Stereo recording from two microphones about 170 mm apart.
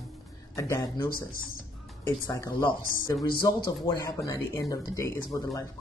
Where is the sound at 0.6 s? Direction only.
15° left (ahead or behind).